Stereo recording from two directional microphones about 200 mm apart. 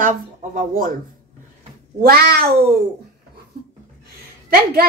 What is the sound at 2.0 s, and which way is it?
Speech, 50° right (ahead or behind).